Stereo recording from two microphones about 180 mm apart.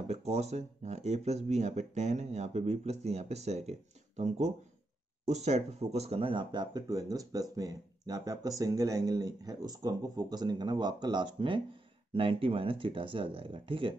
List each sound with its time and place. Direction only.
0.1 s speech: 35° right (ahead or behind)
5.2 s speech: 40° right (ahead or behind)